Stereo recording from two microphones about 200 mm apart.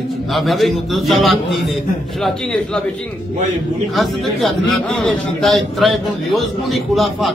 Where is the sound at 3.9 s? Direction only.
Centre (ahead or behind).